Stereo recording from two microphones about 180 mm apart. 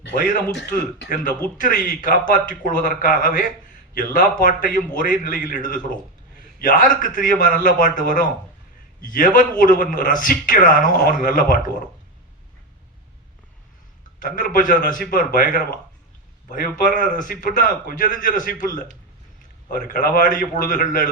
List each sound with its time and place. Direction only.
1.1 s a man's voice: 45° left (ahead or behind)
14.2 s a man's voice: 50° left (ahead or behind)